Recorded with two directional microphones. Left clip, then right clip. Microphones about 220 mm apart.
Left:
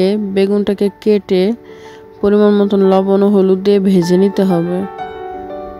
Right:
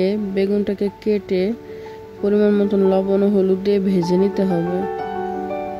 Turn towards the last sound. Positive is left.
turn(degrees=35)  # may be behind; listen again after turning